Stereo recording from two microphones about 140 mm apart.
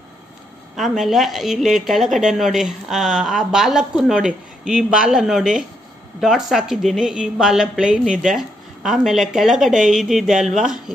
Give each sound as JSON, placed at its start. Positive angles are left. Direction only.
{"t": 0.7, "sound": "a woman's voice", "side_deg": 0}